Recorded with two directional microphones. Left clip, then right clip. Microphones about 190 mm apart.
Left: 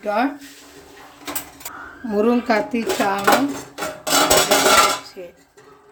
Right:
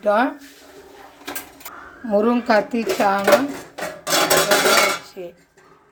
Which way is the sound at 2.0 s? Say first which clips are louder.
Right 1 dB; 10° right (ahead or behind).